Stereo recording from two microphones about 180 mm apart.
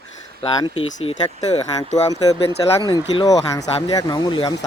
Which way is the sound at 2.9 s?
20° left (ahead or behind).